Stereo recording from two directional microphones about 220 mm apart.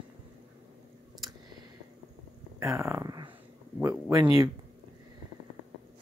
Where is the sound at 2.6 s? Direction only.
15° right (ahead or behind).